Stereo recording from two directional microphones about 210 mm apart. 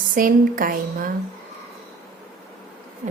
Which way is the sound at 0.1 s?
40° right (ahead or behind).